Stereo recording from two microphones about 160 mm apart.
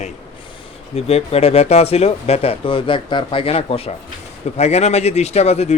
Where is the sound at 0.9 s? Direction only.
40° left (ahead or behind).